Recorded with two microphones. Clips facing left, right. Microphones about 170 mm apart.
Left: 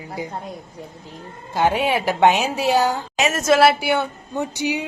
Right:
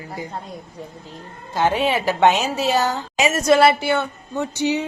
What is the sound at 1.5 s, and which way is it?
A woman's voice, 10° left (ahead or behind).